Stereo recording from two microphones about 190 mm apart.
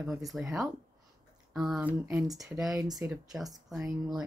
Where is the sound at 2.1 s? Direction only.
15° right (ahead or behind).